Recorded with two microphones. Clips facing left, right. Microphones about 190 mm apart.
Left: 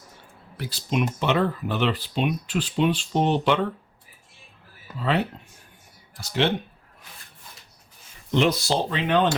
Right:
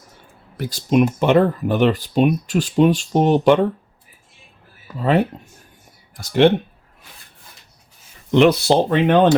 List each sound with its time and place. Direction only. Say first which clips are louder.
0.5 s speech: right 9 dB; 45° right (ahead or behind)
4.9 s speech: right 7 dB; 45° right (ahead or behind)
8.3 s speech: right 8 dB; 65° right (ahead or behind)